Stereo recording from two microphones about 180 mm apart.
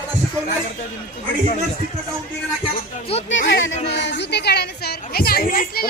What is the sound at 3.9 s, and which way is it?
A child's voice, 75° left (ahead or behind).